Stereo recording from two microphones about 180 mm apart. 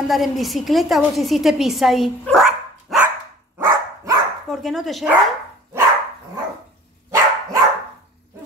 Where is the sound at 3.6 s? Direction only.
20° right (ahead or behind).